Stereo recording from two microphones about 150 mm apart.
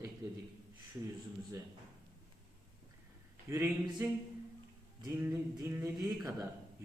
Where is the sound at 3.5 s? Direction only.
15° right (ahead or behind).